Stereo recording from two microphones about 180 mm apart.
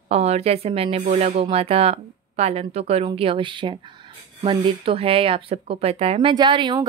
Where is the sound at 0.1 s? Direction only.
35° right (ahead or behind).